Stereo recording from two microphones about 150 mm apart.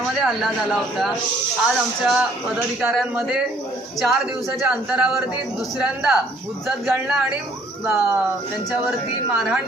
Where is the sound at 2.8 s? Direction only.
10° right (ahead or behind).